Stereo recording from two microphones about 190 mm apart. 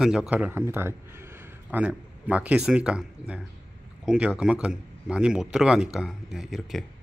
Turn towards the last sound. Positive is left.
turn(degrees=0)  # may be behind; listen again after turning